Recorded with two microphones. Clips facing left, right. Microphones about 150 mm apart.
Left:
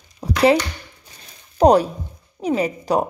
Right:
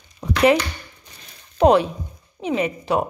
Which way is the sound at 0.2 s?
35° left (ahead or behind).